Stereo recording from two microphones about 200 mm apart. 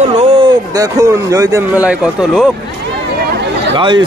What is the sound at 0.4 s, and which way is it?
A man's voice, 15° right (ahead or behind).